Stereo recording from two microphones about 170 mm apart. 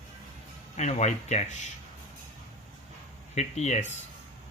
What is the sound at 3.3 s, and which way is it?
Speech, 40° left (ahead or behind).